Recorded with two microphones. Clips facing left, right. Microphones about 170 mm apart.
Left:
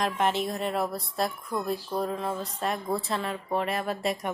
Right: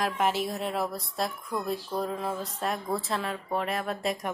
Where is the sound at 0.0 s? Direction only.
5° right (ahead or behind).